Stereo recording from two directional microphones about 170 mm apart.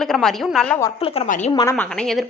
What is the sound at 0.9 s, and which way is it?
Speech, 35° left (ahead or behind).